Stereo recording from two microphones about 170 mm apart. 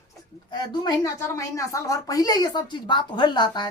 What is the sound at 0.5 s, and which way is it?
A woman's voice, 20° left (ahead or behind).